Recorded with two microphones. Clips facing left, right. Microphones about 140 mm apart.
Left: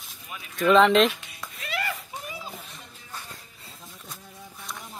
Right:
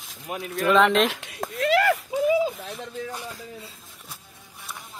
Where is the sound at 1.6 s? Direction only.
80° right.